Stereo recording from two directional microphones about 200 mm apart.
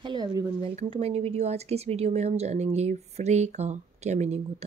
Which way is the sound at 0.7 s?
30° right (ahead or behind).